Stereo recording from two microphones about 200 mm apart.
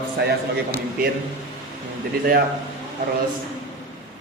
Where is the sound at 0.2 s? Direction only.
50° right (ahead or behind).